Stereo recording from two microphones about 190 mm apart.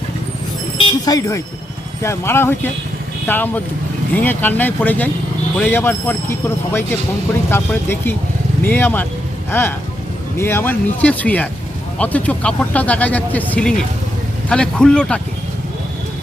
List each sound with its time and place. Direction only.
0.8 s vehicle: 25° left (ahead or behind)
2.0 s a man's voice: 15° left (ahead or behind)